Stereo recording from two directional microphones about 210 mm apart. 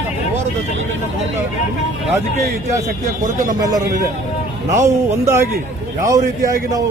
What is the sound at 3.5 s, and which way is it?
Speech, 15° right (ahead or behind).